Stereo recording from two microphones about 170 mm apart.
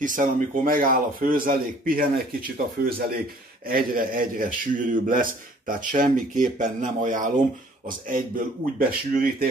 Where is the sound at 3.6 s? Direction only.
60° right (ahead or behind).